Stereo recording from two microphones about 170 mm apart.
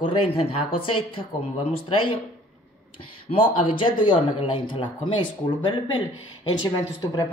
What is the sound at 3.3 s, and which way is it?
Speech, 30° left (ahead or behind).